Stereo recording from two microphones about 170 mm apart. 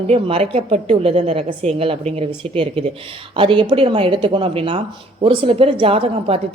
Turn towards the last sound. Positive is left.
turn(degrees=-35)  # may be behind; listen again after turning